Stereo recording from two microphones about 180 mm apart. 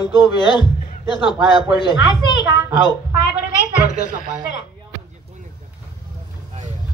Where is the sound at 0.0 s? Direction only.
25° left (ahead or behind).